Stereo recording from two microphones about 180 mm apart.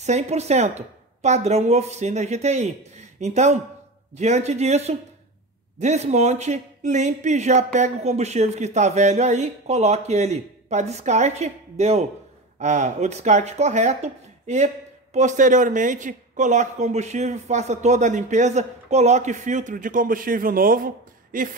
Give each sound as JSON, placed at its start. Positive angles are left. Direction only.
{"t": 0.0, "sound": "speech", "side_deg": -35}